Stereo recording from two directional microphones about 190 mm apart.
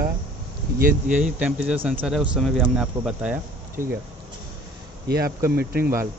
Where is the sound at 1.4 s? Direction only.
5° right (ahead or behind).